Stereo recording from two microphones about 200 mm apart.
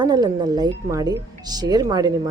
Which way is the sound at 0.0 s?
20° right (ahead or behind).